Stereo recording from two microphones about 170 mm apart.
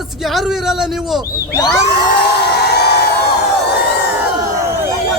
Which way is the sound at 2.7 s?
75° left (ahead or behind).